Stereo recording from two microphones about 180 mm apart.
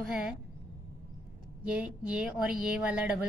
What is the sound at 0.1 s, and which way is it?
Speech, 5° right (ahead or behind).